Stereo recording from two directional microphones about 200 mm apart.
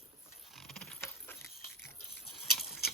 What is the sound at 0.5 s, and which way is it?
Keys jangling, centre (ahead or behind).